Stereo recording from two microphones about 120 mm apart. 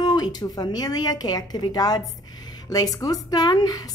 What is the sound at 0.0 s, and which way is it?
A woman's voice, 35° left (ahead or behind).